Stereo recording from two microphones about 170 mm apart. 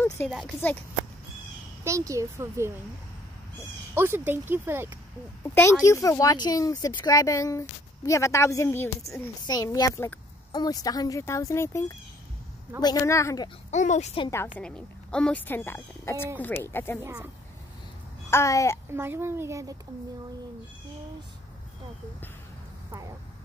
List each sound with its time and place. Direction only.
0.2 s speech: 10° left (ahead or behind)
1.9 s speech: 20° right (ahead or behind)
3.9 s speech: 15° right (ahead or behind)
5.4 s speech: 15° left (ahead or behind)
12.8 s speech: 20° left (ahead or behind)
13.7 s speech: 45° left (ahead or behind)
14.6 s speech: 5° left (ahead or behind)
17.0 s speech: 15° right (ahead or behind)
18.3 s speech: 15° left (ahead or behind)
18.9 s speech: 15° right (ahead or behind)